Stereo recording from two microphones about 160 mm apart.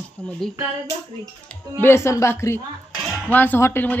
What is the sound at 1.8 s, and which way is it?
Speech, 15° left (ahead or behind).